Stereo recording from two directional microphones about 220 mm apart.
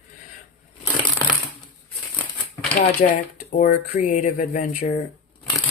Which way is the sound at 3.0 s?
35° left (ahead or behind).